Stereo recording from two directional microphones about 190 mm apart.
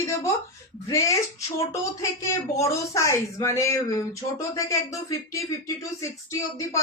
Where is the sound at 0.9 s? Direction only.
15° left (ahead or behind).